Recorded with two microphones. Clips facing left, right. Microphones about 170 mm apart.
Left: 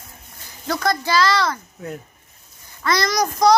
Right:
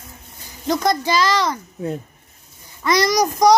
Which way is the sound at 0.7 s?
15° right (ahead or behind).